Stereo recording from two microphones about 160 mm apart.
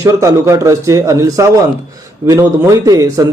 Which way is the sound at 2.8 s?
25° right (ahead or behind).